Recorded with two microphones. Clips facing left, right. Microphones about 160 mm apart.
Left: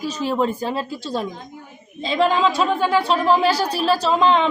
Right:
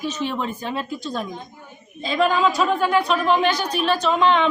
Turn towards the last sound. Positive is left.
turn(degrees=30)  # may be behind; listen again after turning